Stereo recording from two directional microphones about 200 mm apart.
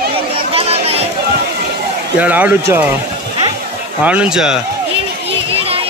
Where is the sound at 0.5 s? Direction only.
30° right (ahead or behind).